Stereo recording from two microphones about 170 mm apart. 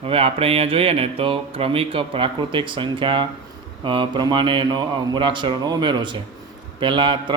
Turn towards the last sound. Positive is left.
turn(degrees=-30)  # may be behind; listen again after turning